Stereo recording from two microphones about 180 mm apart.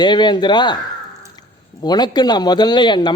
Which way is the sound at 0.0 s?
25° left (ahead or behind).